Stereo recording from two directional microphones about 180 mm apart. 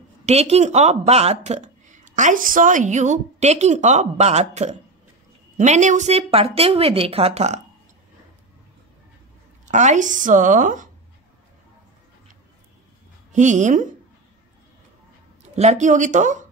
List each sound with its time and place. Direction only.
0.2 s a woman's voice: 35° right (ahead or behind)
9.7 s a woman's voice: 40° right (ahead or behind)
13.3 s a woman's voice: 40° right (ahead or behind)
15.4 s speech: 40° right (ahead or behind)